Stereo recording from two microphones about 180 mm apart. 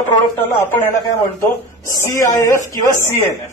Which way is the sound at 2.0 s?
20° left (ahead or behind).